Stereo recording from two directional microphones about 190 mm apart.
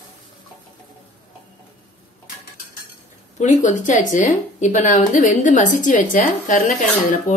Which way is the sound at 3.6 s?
40° left (ahead or behind).